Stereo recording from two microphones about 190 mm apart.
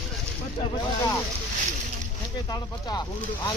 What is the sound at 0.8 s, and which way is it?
Speech, 15° left (ahead or behind).